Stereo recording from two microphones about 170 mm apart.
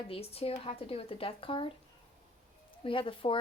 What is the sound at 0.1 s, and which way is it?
Speech, 35° left (ahead or behind).